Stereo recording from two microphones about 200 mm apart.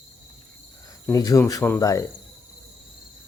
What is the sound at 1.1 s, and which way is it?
Speech, 15° left (ahead or behind).